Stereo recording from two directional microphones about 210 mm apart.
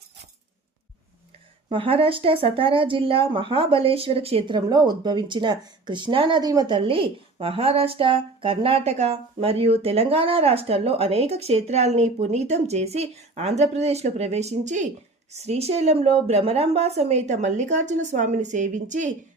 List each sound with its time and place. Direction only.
1.7 s a woman's voice: 25° right (ahead or behind)